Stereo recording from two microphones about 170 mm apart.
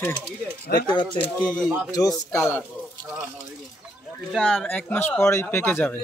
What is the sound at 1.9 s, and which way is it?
Speech, 20° left (ahead or behind).